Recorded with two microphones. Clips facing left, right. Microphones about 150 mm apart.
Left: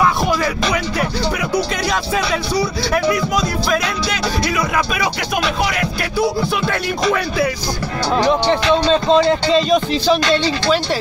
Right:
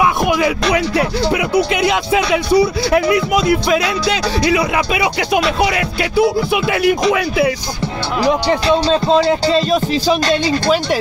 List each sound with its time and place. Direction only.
0.0 s music: 15° right (ahead or behind)
0.9 s speech: 25° right (ahead or behind)
6.5 s music: 10° right (ahead or behind)
8.9 s speech: 5° right (ahead or behind)